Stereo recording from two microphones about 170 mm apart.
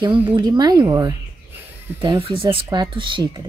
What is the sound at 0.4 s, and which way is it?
Speech, 25° right (ahead or behind).